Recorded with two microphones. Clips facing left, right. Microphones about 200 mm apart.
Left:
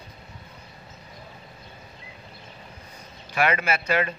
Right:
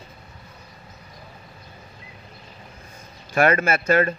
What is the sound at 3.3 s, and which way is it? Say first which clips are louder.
Speech: right 5 dB; 45° right (ahead or behind).